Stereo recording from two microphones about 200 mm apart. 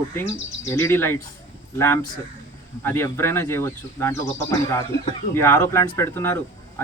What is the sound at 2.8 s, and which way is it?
Speech, 10° left (ahead or behind).